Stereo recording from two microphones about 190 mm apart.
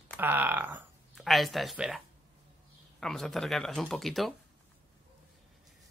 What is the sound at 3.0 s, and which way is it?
Speech, centre (ahead or behind).